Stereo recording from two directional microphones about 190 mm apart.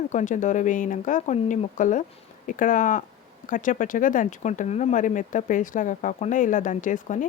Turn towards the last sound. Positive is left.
turn(degrees=45)  # may be behind; listen again after turning